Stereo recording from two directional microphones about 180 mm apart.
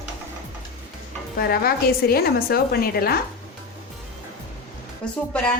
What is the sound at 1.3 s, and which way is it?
A woman's voice, 55° left (ahead or behind).